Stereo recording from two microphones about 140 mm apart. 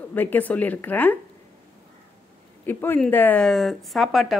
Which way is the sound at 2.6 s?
15° left (ahead or behind).